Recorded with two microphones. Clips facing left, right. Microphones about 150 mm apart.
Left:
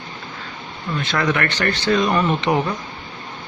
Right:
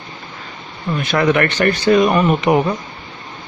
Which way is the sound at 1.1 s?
20° right (ahead or behind).